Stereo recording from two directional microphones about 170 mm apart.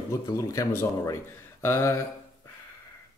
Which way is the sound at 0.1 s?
20° left (ahead or behind).